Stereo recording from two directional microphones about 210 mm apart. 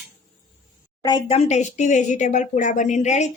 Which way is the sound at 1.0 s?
25° left (ahead or behind).